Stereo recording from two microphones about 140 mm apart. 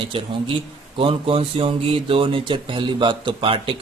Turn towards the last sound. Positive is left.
turn(degrees=-40)  # may be behind; listen again after turning